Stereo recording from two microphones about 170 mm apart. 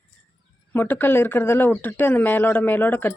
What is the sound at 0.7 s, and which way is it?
Speech, 10° left (ahead or behind).